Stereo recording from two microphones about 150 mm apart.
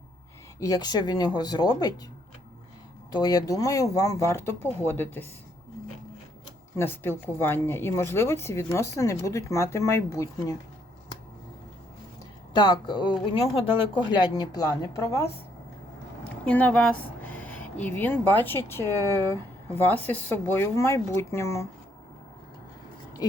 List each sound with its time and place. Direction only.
0.6 s speech: 25° left (ahead or behind)
3.1 s speech: 25° left (ahead or behind)
6.7 s speech: 15° left (ahead or behind)
12.5 s speech: 30° left (ahead or behind)
16.2 s speech: 10° left (ahead or behind)